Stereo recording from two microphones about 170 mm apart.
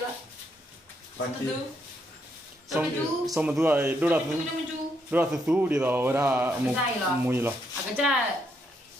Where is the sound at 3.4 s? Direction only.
10° right (ahead or behind).